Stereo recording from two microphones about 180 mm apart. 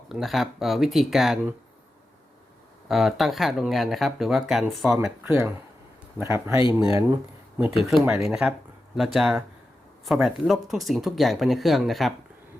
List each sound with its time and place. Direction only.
0.1 s speech: centre (ahead or behind)
2.9 s speech: centre (ahead or behind); by 7.2 s 20° right (ahead or behind)
7.9 s speech: centre (ahead or behind)